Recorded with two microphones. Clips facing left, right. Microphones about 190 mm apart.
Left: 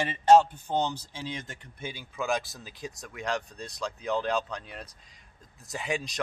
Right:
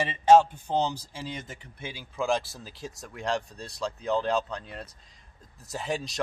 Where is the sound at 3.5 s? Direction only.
15° left (ahead or behind).